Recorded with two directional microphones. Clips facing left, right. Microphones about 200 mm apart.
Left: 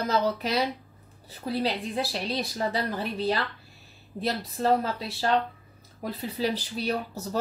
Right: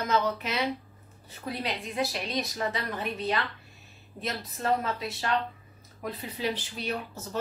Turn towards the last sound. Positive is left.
turn(degrees=35)  # may be behind; listen again after turning